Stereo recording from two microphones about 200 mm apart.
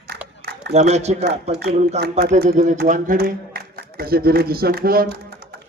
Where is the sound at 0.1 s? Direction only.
55° right (ahead or behind).